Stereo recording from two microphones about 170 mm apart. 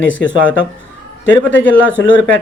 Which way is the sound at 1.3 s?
90° left.